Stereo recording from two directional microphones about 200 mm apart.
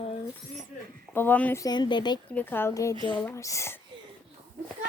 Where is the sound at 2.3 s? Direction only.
10° left (ahead or behind).